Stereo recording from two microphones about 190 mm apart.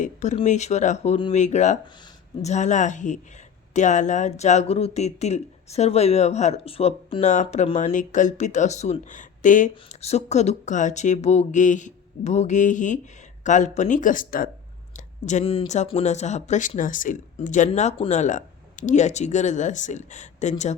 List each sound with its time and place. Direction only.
0.0 s speech: 40° left (ahead or behind)